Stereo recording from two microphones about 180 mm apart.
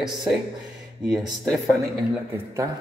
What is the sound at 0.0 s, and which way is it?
Speech, centre (ahead or behind).